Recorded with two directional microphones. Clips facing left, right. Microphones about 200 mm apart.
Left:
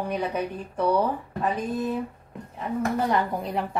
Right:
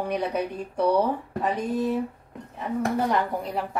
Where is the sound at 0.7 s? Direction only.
15° right (ahead or behind).